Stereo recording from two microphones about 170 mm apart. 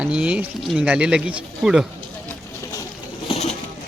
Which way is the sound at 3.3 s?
35° left (ahead or behind).